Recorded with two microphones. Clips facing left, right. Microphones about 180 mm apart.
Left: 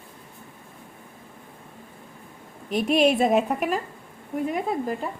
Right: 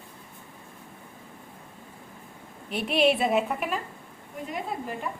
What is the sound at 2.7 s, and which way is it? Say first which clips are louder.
A woman's voice: left 3 dB; 45° left (ahead or behind).